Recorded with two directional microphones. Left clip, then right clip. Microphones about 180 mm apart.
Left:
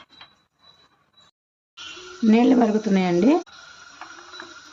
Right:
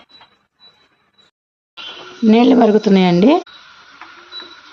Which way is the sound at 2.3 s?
35° right (ahead or behind).